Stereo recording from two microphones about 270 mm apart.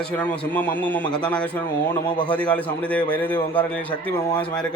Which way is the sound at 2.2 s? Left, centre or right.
Centre.